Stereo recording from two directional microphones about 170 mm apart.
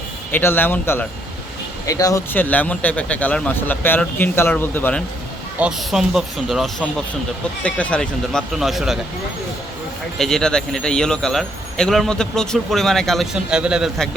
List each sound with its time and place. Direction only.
0.3 s speech: 10° left (ahead or behind)
5.5 s speech: 5° right (ahead or behind)
10.2 s speech: 5° left (ahead or behind)